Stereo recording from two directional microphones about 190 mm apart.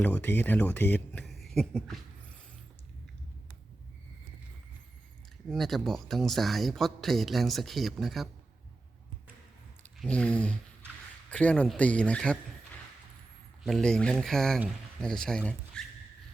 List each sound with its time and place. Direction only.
0.0 s speech: 10° left (ahead or behind)
5.5 s speech: centre (ahead or behind)
9.8 s a sound: 5° left (ahead or behind)
11.3 s speech: 5° left (ahead or behind)
13.7 s speech: centre (ahead or behind)